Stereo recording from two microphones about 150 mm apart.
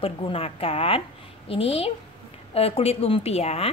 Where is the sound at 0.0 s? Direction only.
40° left (ahead or behind).